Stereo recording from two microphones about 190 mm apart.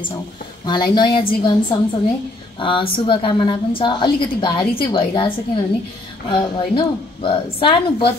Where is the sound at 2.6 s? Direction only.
25° left (ahead or behind).